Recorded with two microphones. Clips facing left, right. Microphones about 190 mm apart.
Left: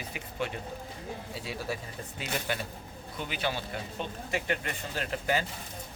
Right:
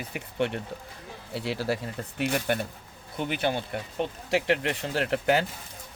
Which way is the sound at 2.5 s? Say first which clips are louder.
Right 6 dB; 55° right (ahead or behind).